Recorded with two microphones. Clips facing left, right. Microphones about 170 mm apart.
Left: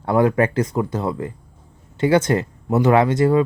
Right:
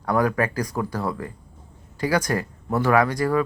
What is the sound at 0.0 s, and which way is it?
Speech, 25° left (ahead or behind).